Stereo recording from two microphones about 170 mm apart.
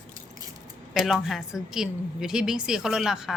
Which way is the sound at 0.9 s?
Centre (ahead or behind).